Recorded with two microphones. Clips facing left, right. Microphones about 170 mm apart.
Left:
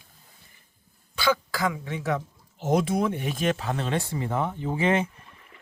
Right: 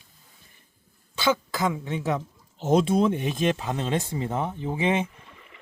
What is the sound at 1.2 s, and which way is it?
Speech, 20° right (ahead or behind).